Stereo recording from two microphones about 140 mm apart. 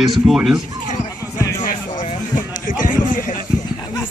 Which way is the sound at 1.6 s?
65° left (ahead or behind).